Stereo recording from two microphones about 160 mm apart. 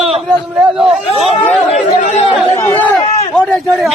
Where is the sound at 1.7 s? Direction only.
45° left (ahead or behind).